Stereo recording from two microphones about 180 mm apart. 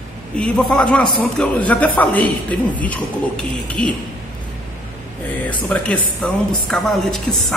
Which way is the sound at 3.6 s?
5° left (ahead or behind).